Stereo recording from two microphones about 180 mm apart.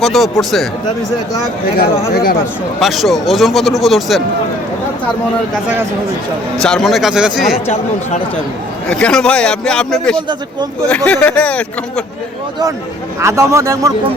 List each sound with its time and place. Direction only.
0.0 s a man's voice: centre (ahead or behind)
1.8 s speech: 55° left (ahead or behind)
2.8 s a man's voice: centre (ahead or behind)
6.6 s a man's voice: 5° left (ahead or behind)
8.9 s a man's voice: 5° left (ahead or behind)
13.1 s a man's voice: 15° right (ahead or behind)